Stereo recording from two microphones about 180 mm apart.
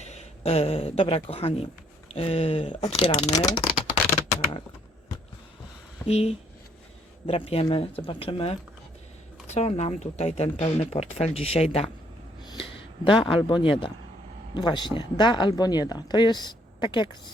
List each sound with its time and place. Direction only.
0.0 s speech: 40° left (ahead or behind)
6.1 s speech: 35° left (ahead or behind)